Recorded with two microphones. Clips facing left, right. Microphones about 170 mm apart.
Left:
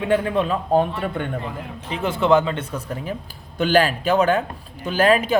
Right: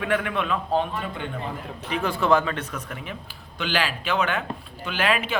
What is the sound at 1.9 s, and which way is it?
A man's voice, 25° left (ahead or behind).